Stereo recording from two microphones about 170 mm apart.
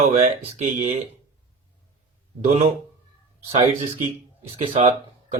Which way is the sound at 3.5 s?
45° right (ahead or behind).